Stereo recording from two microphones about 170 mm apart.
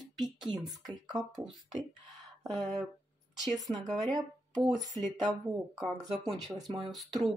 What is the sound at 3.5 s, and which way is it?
Speech, 20° right (ahead or behind).